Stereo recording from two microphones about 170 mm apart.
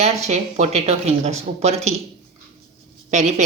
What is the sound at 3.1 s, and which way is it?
Speech, 45° right (ahead or behind).